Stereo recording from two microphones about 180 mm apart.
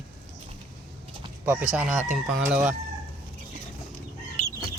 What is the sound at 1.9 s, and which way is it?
Speech, 45° right (ahead or behind).